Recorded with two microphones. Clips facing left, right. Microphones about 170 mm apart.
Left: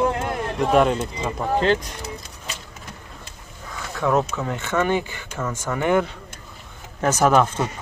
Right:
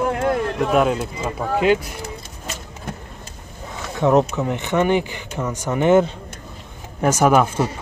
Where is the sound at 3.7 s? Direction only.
20° right (ahead or behind).